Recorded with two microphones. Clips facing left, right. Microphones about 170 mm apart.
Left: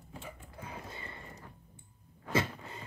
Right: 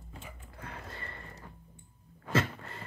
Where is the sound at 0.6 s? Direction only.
5° left (ahead or behind).